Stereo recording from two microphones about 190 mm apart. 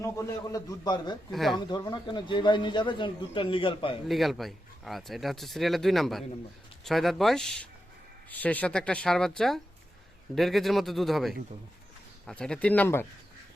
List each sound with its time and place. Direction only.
0.0 s a man's voice: 15° left (ahead or behind)
1.3 s speech: centre (ahead or behind)
1.5 s speech: 20° left (ahead or behind)
4.1 s a man's voice: centre (ahead or behind)